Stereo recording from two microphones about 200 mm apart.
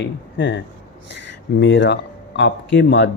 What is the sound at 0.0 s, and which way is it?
Speech, 65° left (ahead or behind).